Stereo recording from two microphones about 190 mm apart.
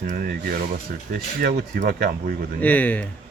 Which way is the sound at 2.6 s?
10° left (ahead or behind).